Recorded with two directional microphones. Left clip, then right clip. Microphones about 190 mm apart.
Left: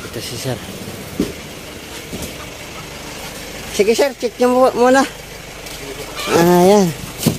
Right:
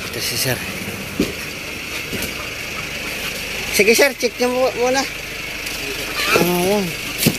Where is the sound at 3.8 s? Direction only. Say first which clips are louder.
Right 1 dB; 10° left (ahead or behind).